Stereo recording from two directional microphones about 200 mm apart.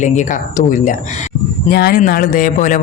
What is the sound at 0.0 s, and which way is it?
Speech, 40° left (ahead or behind).